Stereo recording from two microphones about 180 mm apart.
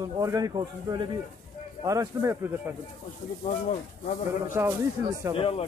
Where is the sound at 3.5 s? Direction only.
40° left (ahead or behind).